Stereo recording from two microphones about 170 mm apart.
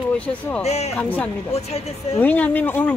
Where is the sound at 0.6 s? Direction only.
40° left (ahead or behind).